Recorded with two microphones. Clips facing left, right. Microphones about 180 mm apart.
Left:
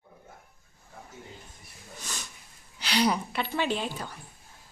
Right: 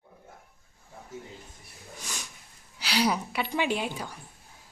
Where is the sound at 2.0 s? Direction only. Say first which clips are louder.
Even; 10° right (ahead or behind).